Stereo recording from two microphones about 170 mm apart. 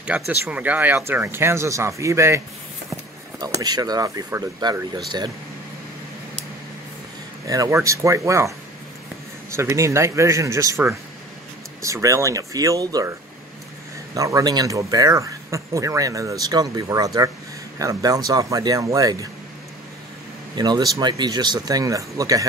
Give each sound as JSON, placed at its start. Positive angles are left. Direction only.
{"t": 0.1, "sound": "speech", "side_deg": -10}
{"t": 7.4, "sound": "speech", "side_deg": -20}
{"t": 14.1, "sound": "speech", "side_deg": -20}
{"t": 20.5, "sound": "speech", "side_deg": -25}